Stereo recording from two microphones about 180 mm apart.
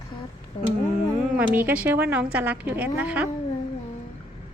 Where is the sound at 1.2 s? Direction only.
10° right (ahead or behind).